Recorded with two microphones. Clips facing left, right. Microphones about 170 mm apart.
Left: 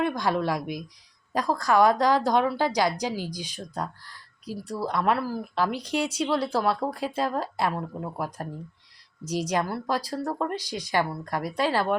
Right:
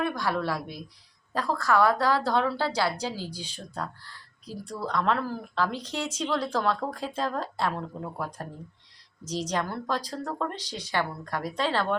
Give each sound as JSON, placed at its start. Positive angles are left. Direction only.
{"t": 0.0, "sound": "speech", "side_deg": 20}